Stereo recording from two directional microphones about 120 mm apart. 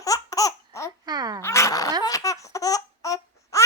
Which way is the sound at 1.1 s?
35° right (ahead or behind).